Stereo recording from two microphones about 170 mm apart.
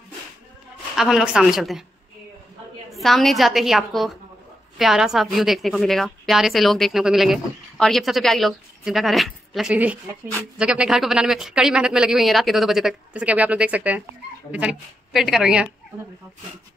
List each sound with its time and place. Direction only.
0.9 s a woman's voice: centre (ahead or behind)
2.9 s a woman's voice: centre (ahead or behind)